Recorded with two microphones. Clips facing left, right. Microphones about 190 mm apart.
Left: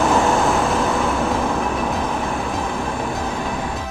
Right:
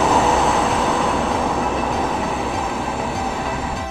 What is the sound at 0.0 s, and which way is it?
Vehicle, centre (ahead or behind).